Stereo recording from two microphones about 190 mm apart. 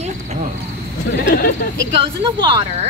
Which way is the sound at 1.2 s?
60° left (ahead or behind).